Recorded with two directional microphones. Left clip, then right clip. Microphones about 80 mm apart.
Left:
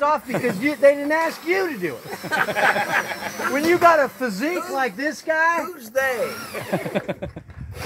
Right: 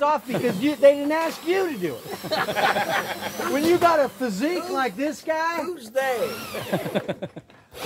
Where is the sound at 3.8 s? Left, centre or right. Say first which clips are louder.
Left 5 dB; left.